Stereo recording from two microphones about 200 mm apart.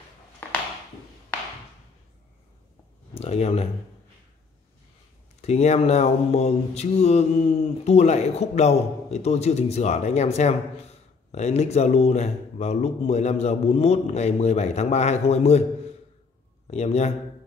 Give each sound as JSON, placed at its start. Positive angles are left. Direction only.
{"t": 3.2, "sound": "speech", "side_deg": 30}
{"t": 5.4, "sound": "mantra", "side_deg": 35}
{"t": 16.7, "sound": "mantra", "side_deg": 35}